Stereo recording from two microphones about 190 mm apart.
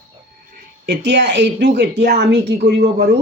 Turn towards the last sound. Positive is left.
turn(degrees=-60)  # may be behind; listen again after turning